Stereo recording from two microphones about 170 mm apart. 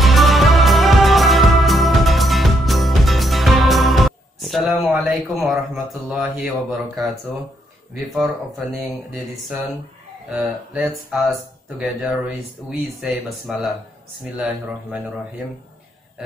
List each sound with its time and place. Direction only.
0.0 s music: centre (ahead or behind)
6.0 s speech: 5° right (ahead or behind)
8.1 s speech: centre (ahead or behind)